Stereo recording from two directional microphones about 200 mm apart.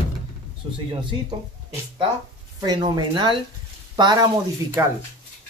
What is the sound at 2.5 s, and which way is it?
Speech, 20° right (ahead or behind).